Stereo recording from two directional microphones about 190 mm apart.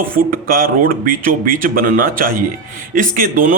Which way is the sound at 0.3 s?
50° right (ahead or behind).